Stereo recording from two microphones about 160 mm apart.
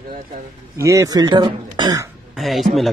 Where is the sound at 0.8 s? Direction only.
20° right (ahead or behind).